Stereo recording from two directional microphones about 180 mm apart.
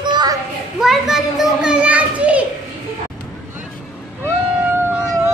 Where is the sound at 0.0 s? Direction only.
25° right (ahead or behind).